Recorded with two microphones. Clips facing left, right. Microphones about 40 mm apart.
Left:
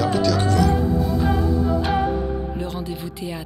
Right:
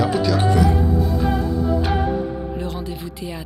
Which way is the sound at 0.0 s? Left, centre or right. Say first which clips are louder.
Right 1 dB; centre.